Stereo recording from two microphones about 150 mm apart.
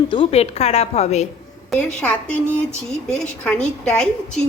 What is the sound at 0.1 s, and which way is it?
A woman's voice, 40° left (ahead or behind).